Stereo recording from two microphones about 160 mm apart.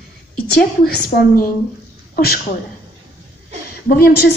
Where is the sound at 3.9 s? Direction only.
70° left (ahead or behind).